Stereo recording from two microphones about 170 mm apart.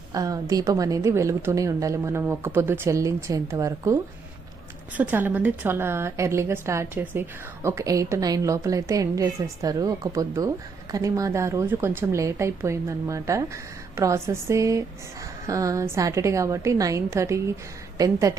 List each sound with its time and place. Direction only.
0.1 s a woman's voice: 20° right (ahead or behind)